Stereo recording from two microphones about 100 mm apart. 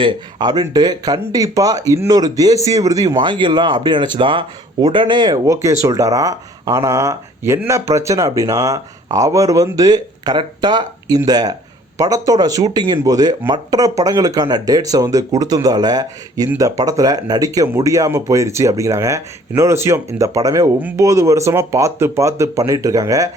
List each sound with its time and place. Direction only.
0.0 s speech: 50° right (ahead or behind)
5.5 s speech: 30° right (ahead or behind)